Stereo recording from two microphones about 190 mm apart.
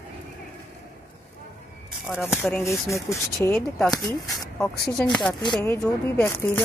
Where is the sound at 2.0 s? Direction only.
5° right (ahead or behind).